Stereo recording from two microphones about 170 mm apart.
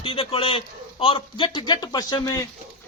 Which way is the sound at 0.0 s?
35° left (ahead or behind).